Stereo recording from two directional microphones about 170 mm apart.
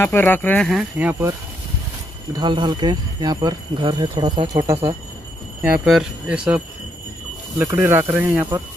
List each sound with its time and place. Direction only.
0.0 s speech: 10° left (ahead or behind); by 1.3 s 10° right (ahead or behind)
2.3 s speech: 25° right (ahead or behind)
5.6 s speech: 5° right (ahead or behind)